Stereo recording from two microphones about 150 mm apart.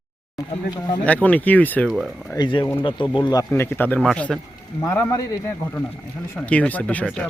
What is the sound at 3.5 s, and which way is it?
Speech, 15° left (ahead or behind).